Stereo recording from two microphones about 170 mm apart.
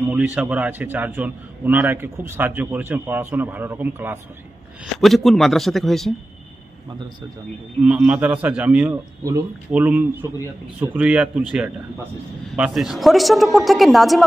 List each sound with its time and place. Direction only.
0.1 s a man's voice: 10° right (ahead or behind)
5.0 s speech: centre (ahead or behind)
7.8 s a man's voice: 10° right (ahead or behind)
9.2 s speech: 20° right (ahead or behind)
9.7 s a man's voice: 10° right (ahead or behind)